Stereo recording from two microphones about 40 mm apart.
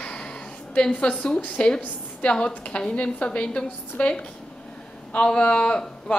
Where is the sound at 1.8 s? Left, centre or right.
Left.